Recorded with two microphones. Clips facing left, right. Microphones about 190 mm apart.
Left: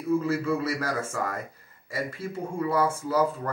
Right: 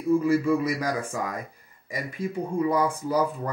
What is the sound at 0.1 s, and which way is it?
Speech, 15° right (ahead or behind).